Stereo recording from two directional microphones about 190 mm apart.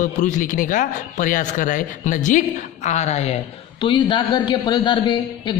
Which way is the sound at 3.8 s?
25° left (ahead or behind).